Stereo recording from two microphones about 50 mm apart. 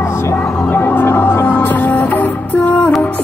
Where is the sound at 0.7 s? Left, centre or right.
Left.